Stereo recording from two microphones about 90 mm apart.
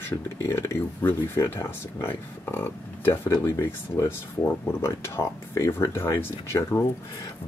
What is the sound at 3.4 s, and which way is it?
Speech, 35° left (ahead or behind).